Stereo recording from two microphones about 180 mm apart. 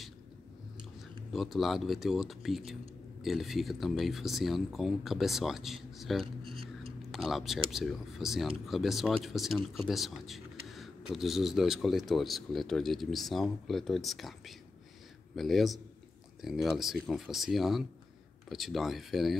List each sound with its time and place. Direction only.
1.3 s speech: centre (ahead or behind)
6.2 s a sound: 30° right (ahead or behind)
7.0 s speech: centre (ahead or behind)